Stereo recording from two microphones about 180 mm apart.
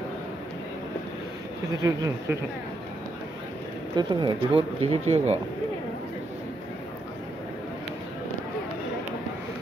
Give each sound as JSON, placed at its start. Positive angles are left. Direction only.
{"t": 1.8, "sound": "speech", "side_deg": -20}
{"t": 3.9, "sound": "speech", "side_deg": -25}